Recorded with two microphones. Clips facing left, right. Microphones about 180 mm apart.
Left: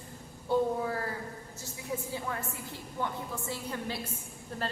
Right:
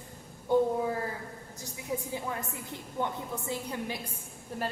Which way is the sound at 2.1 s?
20° right (ahead or behind).